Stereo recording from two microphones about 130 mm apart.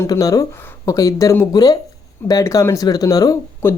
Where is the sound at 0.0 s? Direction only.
25° left (ahead or behind).